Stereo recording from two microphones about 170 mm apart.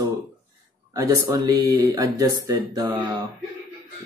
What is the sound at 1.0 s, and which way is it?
Speech, 20° right (ahead or behind).